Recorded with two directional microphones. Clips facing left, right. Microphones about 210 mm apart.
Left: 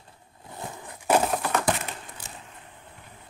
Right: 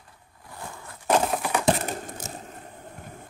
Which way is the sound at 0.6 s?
20° left (ahead or behind).